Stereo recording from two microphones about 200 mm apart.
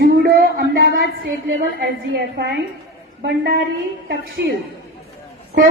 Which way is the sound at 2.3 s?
55° right (ahead or behind).